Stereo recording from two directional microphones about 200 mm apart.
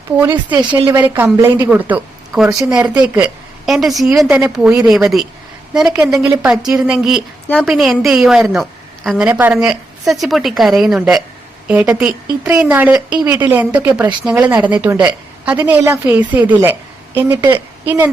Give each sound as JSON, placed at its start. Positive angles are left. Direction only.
{"t": 0.2, "sound": "a woman's voice", "side_deg": -10}
{"t": 0.9, "sound": "a woman's voice", "side_deg": -10}